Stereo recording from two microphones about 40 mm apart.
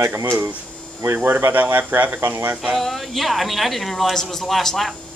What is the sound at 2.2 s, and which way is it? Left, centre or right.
Speech, right.